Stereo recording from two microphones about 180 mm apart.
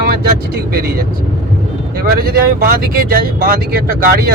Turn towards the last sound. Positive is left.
turn(degrees=-55)  # may be behind; listen again after turning